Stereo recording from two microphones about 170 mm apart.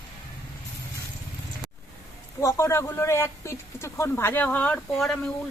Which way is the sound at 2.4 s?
15° left (ahead or behind).